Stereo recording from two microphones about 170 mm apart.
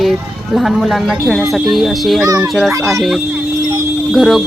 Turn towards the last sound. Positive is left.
turn(degrees=0)  # may be behind; listen again after turning